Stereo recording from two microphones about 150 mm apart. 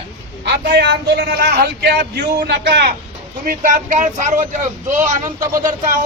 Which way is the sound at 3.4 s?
65° right (ahead or behind).